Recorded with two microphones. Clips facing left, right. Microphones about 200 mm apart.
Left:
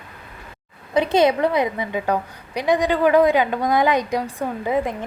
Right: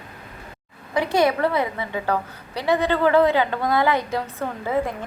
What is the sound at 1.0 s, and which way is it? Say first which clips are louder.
A woman's voice: left 3 dB; 20° left (ahead or behind).